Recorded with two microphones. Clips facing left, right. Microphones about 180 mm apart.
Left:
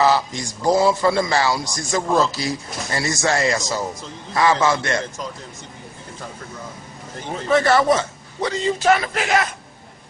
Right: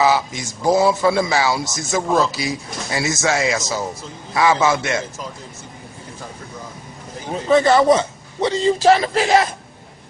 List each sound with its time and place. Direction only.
0.0 s a man's voice: 5° right (ahead or behind)
7.4 s a man's voice: 15° right (ahead or behind)